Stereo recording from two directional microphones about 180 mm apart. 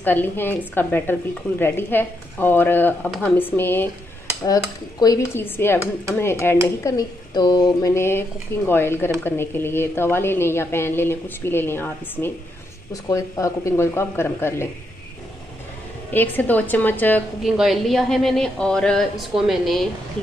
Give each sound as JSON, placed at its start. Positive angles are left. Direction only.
{"t": 0.0, "sound": "a woman's voice", "side_deg": 10}
{"t": 5.0, "sound": "a woman's voice", "side_deg": 15}
{"t": 16.1, "sound": "a woman's voice", "side_deg": 10}
{"t": 17.4, "sound": "speech", "side_deg": 0}